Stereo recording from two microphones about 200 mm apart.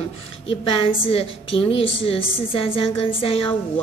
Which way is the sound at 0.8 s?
30° left (ahead or behind).